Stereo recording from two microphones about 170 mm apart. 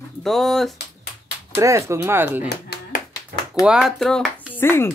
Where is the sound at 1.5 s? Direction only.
15° right (ahead or behind).